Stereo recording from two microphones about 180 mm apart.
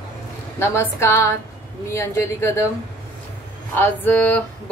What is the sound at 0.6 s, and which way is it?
A woman's voice, 15° left (ahead or behind).